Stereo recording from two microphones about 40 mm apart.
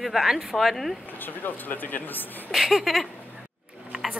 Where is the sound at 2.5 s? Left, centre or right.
Centre.